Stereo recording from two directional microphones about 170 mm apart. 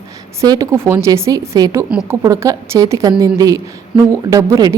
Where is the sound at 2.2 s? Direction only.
20° right (ahead or behind).